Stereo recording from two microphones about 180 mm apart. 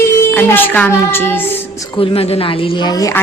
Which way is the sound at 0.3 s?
10° left (ahead or behind).